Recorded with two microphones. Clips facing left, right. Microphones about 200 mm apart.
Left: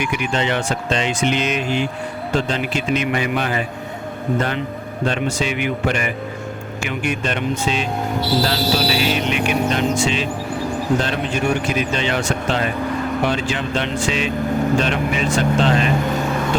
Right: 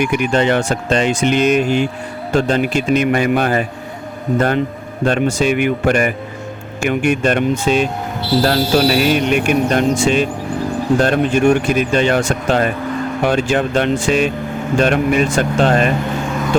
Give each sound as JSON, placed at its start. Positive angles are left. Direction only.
{"t": 0.0, "sound": "speech", "side_deg": -50}